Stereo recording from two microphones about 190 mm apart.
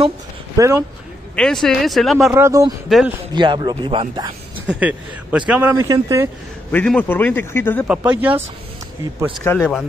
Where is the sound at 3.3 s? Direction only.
25° right (ahead or behind).